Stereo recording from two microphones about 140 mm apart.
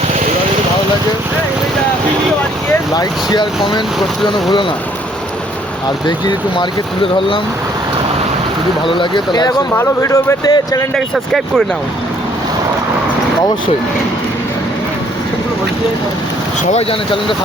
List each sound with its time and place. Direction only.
2.9 s speech: 30° left (ahead or behind)
6.1 s speech: 35° left (ahead or behind)
8.9 s speech: 35° left (ahead or behind)
9.7 s speech: 20° left (ahead or behind)
10.9 s speech: centre (ahead or behind)
16.7 s speech: 40° left (ahead or behind)